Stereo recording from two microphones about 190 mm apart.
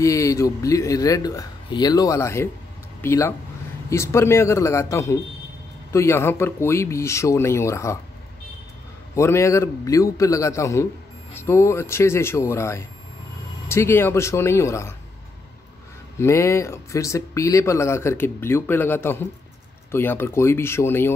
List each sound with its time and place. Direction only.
0.0 s speech: 15° left (ahead or behind)
9.1 s speech: 15° left (ahead or behind)
16.2 s speech: 15° left (ahead or behind)